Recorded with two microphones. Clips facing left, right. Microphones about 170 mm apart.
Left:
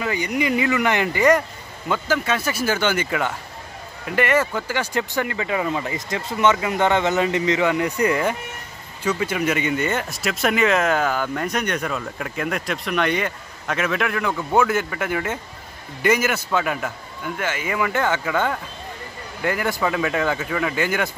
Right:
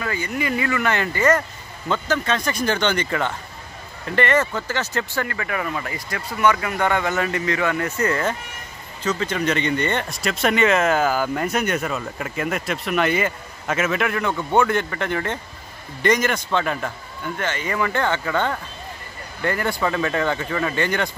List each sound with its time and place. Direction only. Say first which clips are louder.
0.0 s a man's voice: left 3 dB; 15° left (ahead or behind)